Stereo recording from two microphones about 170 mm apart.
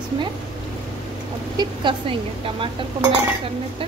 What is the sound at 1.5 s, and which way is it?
Speech, 25° right (ahead or behind).